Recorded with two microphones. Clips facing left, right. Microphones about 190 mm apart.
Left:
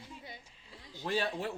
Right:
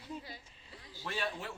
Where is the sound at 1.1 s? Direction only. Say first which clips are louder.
Left 7 dB; 35° left (ahead or behind).